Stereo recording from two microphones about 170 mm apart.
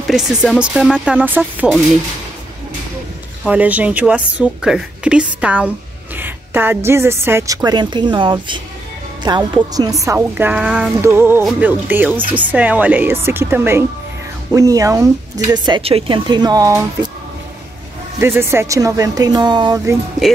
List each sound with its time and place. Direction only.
0.1 s speech: 5° right (ahead or behind)
3.4 s a woman's voice: 10° right (ahead or behind)
18.2 s speech: 15° right (ahead or behind)